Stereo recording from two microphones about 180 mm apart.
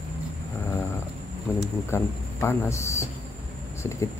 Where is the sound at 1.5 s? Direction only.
15° left (ahead or behind).